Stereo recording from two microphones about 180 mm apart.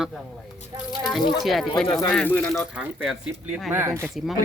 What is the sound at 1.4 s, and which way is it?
Speech, centre (ahead or behind).